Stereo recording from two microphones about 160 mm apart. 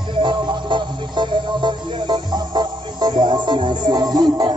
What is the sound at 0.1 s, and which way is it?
Music, 30° right (ahead or behind).